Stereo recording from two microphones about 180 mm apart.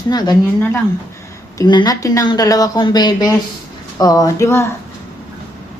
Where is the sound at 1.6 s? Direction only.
25° left (ahead or behind).